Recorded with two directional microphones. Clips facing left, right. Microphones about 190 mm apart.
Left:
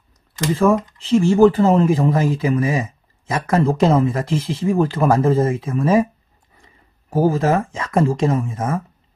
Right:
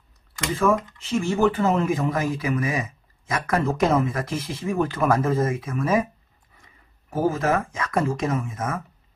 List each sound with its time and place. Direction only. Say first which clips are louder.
0.4 s speech: left 5 dB; 30° left (ahead or behind)